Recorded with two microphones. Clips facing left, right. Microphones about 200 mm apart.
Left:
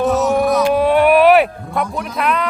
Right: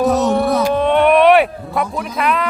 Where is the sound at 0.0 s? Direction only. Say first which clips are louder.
Right 1 dB; 35° right (ahead or behind).